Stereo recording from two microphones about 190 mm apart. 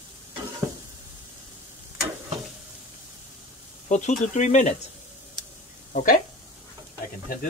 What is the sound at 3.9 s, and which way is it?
Speech, 40° left (ahead or behind).